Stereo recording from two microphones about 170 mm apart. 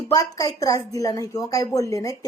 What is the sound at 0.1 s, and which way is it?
Speech, 20° left (ahead or behind).